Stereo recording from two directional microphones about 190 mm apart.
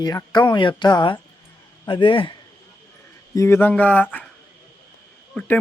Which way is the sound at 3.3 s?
15° left (ahead or behind).